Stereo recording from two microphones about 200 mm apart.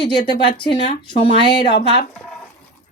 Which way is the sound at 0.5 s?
25° left (ahead or behind).